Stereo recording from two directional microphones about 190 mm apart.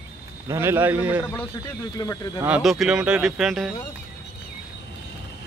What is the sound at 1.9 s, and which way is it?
Speech, 20° left (ahead or behind).